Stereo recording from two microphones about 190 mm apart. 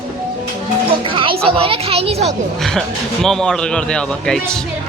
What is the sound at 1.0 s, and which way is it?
Music, 25° right (ahead or behind).